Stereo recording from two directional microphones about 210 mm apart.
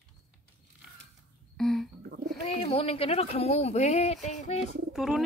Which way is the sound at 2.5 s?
30° left (ahead or behind).